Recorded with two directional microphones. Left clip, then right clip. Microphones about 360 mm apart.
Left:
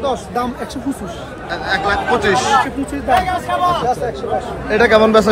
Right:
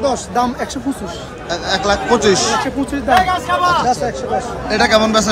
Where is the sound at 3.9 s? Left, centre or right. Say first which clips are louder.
Right 2 dB; right.